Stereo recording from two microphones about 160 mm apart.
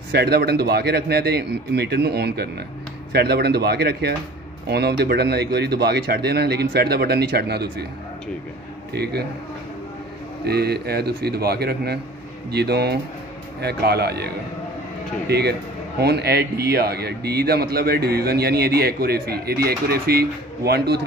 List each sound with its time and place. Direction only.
0.1 s speech: 90° right
8.9 s speech: 90° right
10.4 s speech: 85° right